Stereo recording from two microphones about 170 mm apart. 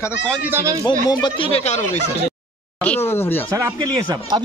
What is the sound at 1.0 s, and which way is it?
Speech, 25° left (ahead or behind).